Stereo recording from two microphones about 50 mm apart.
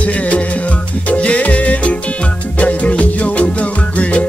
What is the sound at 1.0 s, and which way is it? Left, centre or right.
Music, left.